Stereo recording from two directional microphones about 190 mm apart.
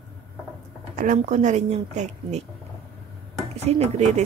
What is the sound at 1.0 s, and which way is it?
Speech, 40° right (ahead or behind).